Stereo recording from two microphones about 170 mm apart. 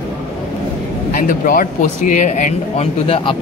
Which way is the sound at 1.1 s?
55° left (ahead or behind).